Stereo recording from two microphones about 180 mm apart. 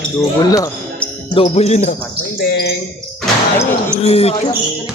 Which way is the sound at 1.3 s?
35° left (ahead or behind).